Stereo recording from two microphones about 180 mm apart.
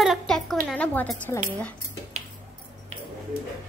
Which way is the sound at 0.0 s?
Centre (ahead or behind).